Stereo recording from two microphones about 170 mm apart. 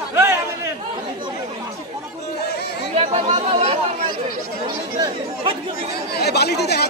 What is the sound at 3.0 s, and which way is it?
Chatter, 35° right (ahead or behind).